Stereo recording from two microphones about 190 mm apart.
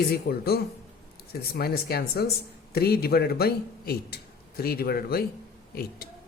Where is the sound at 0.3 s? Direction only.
55° left (ahead or behind).